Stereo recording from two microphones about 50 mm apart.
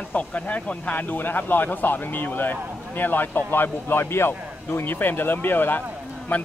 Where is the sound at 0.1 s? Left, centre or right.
Left.